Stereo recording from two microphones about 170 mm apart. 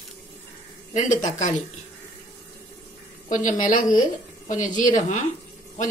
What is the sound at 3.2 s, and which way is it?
A woman's voice, 50° left (ahead or behind).